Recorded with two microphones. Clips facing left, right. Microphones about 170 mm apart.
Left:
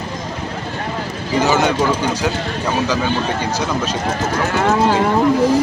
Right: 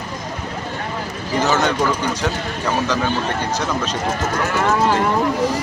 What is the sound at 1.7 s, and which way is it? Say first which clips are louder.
Speech: left 2 dB; 30° left (ahead or behind).